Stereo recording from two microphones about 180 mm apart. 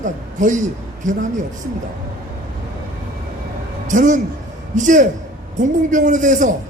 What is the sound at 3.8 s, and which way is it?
A woman's voice, 45° right (ahead or behind).